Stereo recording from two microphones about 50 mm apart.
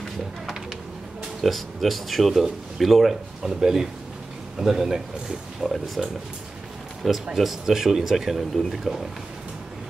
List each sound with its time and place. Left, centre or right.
1.4 s speech: centre
5.6 s speech: centre
7.0 s speech: centre